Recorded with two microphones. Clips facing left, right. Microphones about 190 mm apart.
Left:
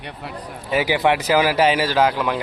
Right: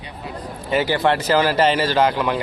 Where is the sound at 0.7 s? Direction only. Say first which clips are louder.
Even; 10° left (ahead or behind).